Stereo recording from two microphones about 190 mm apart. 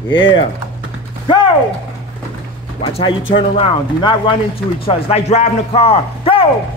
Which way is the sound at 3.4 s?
25° left (ahead or behind).